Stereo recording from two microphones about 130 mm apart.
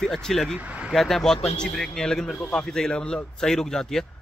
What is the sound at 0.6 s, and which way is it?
Speech, 10° right (ahead or behind).